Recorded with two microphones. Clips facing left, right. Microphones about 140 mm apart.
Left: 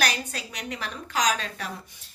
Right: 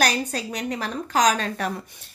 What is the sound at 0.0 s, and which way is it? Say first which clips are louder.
A woman's voice: right 5 dB; 40° right (ahead or behind).